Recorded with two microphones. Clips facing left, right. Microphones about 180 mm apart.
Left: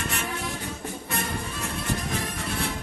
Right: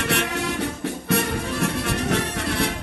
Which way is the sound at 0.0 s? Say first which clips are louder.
Right 7 dB; 75° right (ahead or behind).